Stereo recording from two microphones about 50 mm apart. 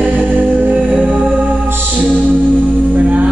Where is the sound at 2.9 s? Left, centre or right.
Right.